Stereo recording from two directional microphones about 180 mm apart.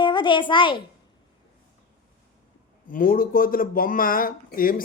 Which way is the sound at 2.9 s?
50° left (ahead or behind).